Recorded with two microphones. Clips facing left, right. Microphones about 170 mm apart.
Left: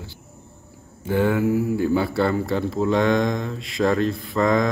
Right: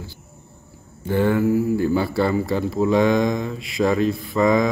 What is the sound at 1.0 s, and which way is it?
Speech, centre (ahead or behind).